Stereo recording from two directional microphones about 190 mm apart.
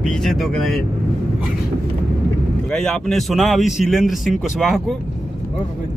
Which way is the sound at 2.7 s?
5° left (ahead or behind).